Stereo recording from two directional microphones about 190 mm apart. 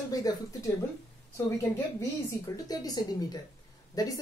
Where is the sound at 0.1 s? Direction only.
20° left (ahead or behind).